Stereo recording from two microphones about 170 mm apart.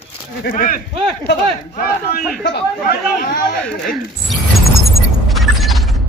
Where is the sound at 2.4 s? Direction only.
70° left (ahead or behind).